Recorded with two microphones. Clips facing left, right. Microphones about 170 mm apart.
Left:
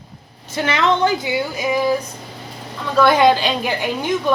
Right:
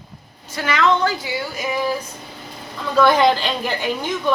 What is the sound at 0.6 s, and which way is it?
Speech, 25° left (ahead or behind).